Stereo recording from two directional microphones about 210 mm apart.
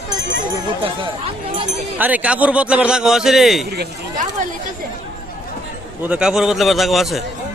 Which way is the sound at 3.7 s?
45° right (ahead or behind).